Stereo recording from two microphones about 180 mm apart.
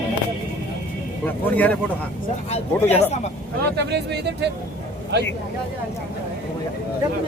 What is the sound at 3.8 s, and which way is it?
Speech, 70° right (ahead or behind).